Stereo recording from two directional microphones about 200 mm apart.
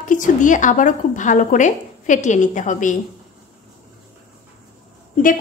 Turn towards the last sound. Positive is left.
turn(degrees=45)  # may be behind; listen again after turning